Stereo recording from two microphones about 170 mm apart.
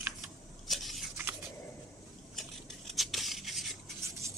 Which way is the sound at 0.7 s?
Centre (ahead or behind).